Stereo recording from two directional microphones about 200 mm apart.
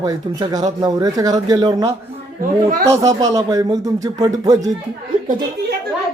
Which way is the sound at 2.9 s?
15° right (ahead or behind).